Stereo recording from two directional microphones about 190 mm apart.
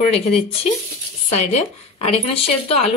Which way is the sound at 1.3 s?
35° left (ahead or behind).